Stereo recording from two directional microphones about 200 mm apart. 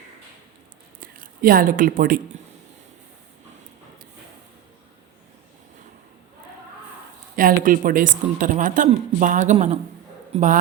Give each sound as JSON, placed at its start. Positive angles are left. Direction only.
{"t": 1.0, "sound": "speech", "side_deg": -45}
{"t": 7.3, "sound": "a woman's voice", "side_deg": -45}